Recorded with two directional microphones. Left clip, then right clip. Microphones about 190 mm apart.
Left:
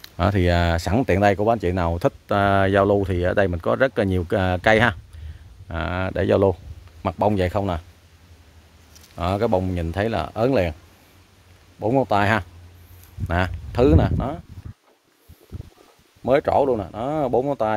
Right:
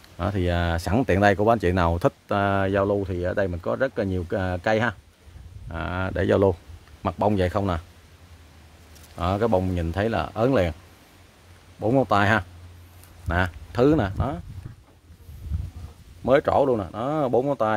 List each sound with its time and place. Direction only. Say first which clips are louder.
0.0 s speech: left 6 dB; 40° left (ahead or behind); by 7.8 s 5° left (ahead or behind)
9.1 s speech: left 1 dB; 15° left (ahead or behind)
11.8 s speech: left 1 dB; 5° left (ahead or behind)
16.3 s speech: left 1 dB; 10° left (ahead or behind)